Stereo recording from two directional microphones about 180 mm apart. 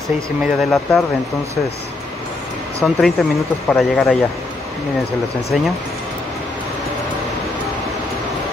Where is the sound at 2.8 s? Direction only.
5° left (ahead or behind).